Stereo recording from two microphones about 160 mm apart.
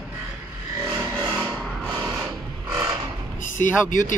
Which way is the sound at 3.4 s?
50° left (ahead or behind).